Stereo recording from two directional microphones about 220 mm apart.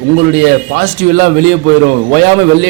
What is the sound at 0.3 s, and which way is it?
A man's voice, 45° right (ahead or behind).